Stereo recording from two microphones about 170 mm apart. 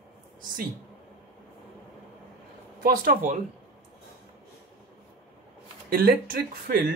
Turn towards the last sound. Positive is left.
turn(degrees=-60)  # may be behind; listen again after turning